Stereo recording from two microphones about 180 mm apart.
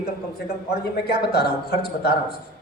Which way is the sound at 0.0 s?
60° left (ahead or behind).